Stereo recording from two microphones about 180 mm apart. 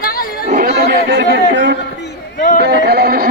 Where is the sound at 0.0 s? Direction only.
55° left (ahead or behind).